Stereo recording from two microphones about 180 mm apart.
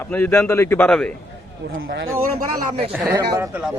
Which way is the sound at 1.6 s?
75° right (ahead or behind).